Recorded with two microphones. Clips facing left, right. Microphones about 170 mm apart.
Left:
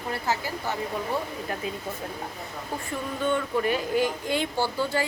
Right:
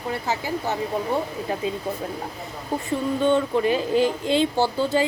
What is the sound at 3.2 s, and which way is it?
Speech, 25° right (ahead or behind).